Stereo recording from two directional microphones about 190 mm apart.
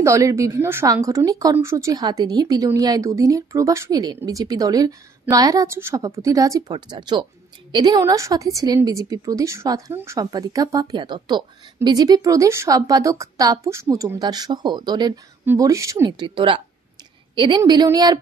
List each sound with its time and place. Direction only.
0.0 s a woman's voice: 15° right (ahead or behind)